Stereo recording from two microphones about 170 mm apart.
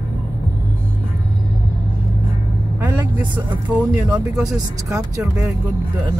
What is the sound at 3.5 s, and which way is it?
Speech, 10° right (ahead or behind).